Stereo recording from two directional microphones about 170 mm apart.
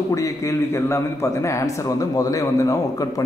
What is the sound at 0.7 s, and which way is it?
A man's voice, 15° left (ahead or behind).